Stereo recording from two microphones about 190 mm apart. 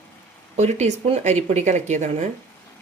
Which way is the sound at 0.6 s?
35° right (ahead or behind).